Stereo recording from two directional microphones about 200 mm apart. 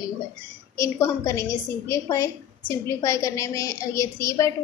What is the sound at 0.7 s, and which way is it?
A woman's voice, 15° left (ahead or behind).